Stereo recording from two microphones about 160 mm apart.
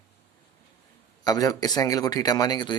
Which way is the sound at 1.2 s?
25° left (ahead or behind).